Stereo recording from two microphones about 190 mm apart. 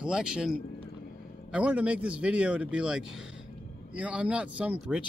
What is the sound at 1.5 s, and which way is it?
Speech, 5° right (ahead or behind).